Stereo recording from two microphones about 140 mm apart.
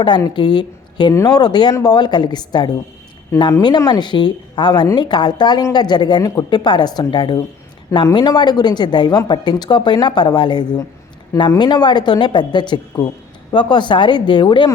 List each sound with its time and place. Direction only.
0.3 s a woman's voice: 30° left (ahead or behind)